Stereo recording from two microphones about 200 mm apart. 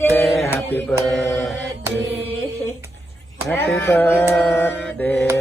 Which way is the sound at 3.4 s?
10° left (ahead or behind).